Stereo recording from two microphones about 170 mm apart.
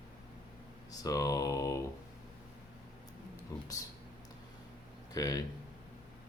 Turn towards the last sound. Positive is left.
turn(degrees=20)  # may be behind; listen again after turning